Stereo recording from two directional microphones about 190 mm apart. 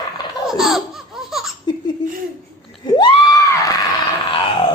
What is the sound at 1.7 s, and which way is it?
Laughter, 20° left (ahead or behind).